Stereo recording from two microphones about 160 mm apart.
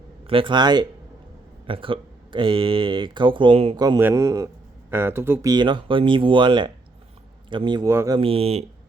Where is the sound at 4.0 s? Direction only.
15° right (ahead or behind).